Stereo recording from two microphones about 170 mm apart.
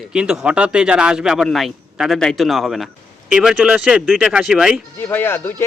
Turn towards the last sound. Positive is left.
turn(degrees=15)  # may be behind; listen again after turning